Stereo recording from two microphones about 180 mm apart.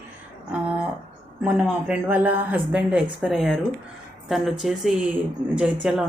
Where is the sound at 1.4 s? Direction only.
5° right (ahead or behind).